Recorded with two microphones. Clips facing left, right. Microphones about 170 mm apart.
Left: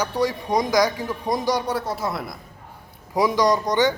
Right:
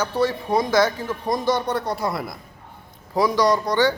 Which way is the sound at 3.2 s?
15° left (ahead or behind).